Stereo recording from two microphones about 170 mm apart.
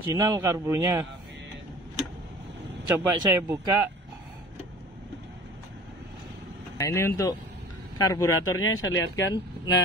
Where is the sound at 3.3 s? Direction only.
15° right (ahead or behind).